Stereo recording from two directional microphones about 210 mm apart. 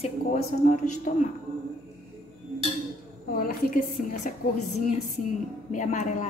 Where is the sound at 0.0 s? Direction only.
35° left (ahead or behind).